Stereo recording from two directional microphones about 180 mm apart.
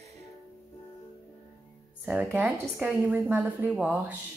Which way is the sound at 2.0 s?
10° right (ahead or behind).